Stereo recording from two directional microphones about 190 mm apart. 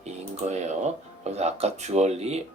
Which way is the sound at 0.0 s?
35° right (ahead or behind).